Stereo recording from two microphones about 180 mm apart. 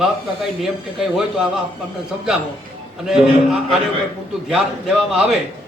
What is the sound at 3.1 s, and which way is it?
Speech, centre (ahead or behind).